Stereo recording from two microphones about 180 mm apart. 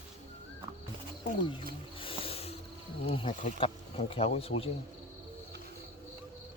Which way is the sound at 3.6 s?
30° left (ahead or behind).